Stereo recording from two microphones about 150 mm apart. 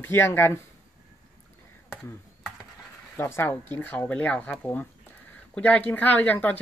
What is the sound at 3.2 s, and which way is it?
Speech, 15° left (ahead or behind).